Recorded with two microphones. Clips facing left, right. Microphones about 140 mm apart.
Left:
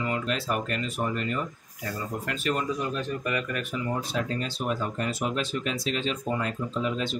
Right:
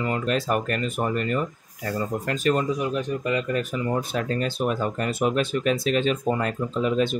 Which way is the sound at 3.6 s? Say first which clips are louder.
Right 4 dB; 55° right (ahead or behind).